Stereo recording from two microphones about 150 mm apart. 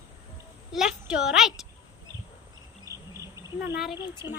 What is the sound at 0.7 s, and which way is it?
Speech, 5° right (ahead or behind).